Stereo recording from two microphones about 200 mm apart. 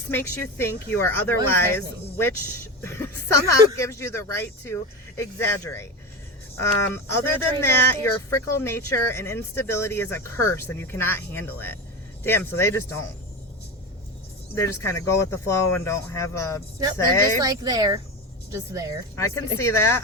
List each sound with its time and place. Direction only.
0.1 s speech: 10° left (ahead or behind)
14.5 s speech: 15° left (ahead or behind)
17.4 s speech: 20° right (ahead or behind)
19.1 s speech: 15° left (ahead or behind)